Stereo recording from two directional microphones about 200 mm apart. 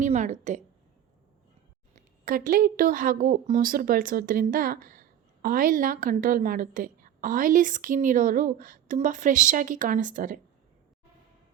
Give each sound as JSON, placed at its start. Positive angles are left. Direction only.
{"t": 0.0, "sound": "a woman's voice", "side_deg": -35}
{"t": 2.2, "sound": "a woman's voice", "side_deg": -45}